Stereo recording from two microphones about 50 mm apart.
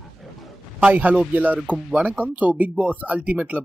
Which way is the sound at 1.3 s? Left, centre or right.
Right.